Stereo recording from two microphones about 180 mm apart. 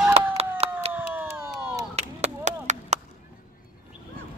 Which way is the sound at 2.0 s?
40° right (ahead or behind).